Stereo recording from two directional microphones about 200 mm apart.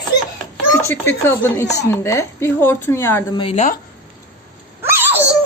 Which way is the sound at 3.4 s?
30° left (ahead or behind).